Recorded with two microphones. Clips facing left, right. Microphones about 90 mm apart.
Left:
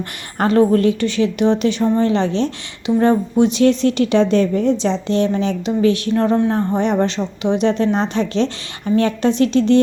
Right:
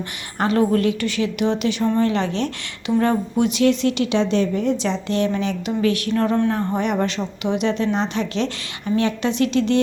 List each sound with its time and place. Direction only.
0.3 s a woman's voice: 35° left (ahead or behind)